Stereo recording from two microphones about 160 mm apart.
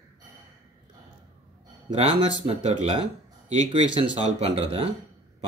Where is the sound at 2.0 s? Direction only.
35° right (ahead or behind).